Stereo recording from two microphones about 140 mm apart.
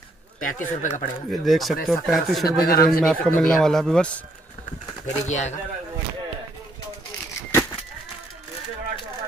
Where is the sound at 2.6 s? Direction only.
90° left.